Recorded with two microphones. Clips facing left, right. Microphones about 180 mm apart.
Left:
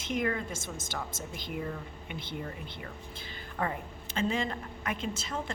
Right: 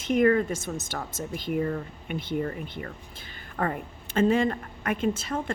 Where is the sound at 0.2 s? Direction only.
55° right (ahead or behind).